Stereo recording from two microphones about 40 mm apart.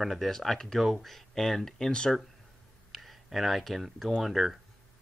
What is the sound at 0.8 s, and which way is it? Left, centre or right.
Speech, centre.